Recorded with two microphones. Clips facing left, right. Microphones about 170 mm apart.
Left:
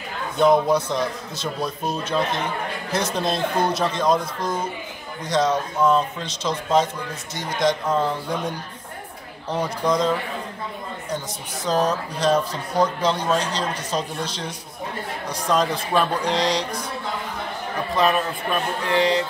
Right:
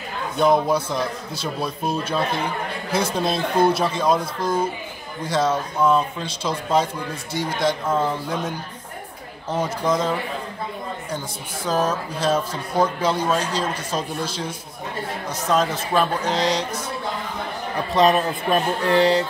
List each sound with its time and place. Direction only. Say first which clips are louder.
0.4 s speech: left 1 dB; 5° right (ahead or behind)
5.3 s speech: left 1 dB; 5° right (ahead or behind)
9.5 s speech: even; 5° right (ahead or behind)
11.6 s speech: left 1 dB; 5° right (ahead or behind)
18.0 s a sound: right 4 dB; 35° right (ahead or behind)